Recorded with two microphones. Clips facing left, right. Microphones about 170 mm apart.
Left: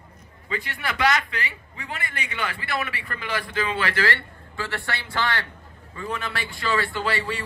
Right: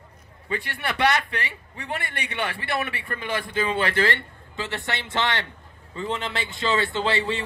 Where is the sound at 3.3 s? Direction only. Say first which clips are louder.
Right 1 dB; 25° right (ahead or behind).